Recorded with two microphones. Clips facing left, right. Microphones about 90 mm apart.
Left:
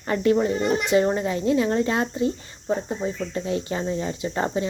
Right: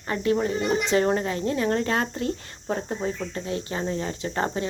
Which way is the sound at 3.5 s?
30° right (ahead or behind).